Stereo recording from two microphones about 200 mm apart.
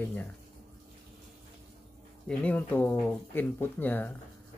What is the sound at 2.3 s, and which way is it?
Speech, 5° left (ahead or behind).